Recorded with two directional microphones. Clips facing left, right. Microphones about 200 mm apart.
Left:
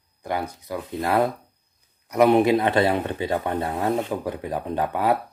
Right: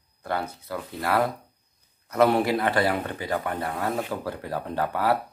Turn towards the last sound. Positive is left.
turn(degrees=20)  # may be behind; listen again after turning